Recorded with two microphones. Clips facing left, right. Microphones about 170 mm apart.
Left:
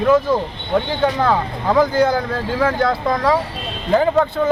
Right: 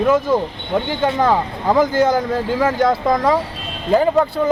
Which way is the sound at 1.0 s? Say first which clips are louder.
Right 4 dB; 20° right (ahead or behind).